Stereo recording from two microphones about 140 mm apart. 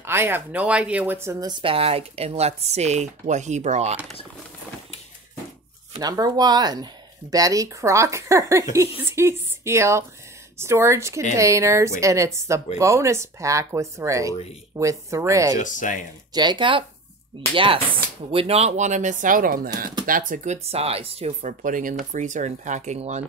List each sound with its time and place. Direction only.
0.0 s speech: 15° right (ahead or behind); by 3.9 s 55° right (ahead or behind)
5.9 s speech: 30° right (ahead or behind)
15.6 s speech: 65° left (ahead or behind)
16.3 s speech: 35° right (ahead or behind); by 19.7 s 90° right
20.1 s speech: 75° right (ahead or behind)
20.5 s speech: 45° right (ahead or behind); by 21.9 s 70° right (ahead or behind)
22.1 s speech: 60° right (ahead or behind)